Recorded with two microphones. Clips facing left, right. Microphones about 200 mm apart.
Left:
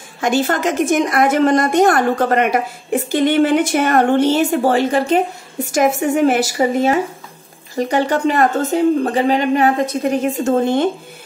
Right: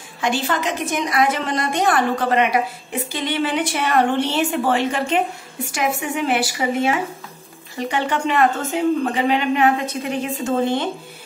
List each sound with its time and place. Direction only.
0.2 s a woman's voice: 45° left (ahead or behind)